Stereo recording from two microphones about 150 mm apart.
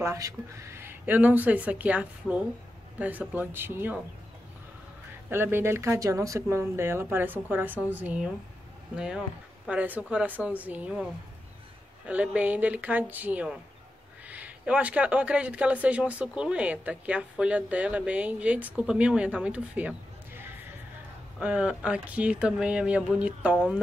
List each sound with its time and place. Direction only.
0.0 s speech: 20° right (ahead or behind)
5.3 s speech: 15° right (ahead or behind)
12.1 s speech: 10° right (ahead or behind)